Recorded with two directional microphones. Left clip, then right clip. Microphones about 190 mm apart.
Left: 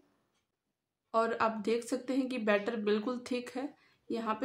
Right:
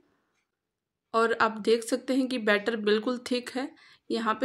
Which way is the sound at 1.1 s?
20° right (ahead or behind).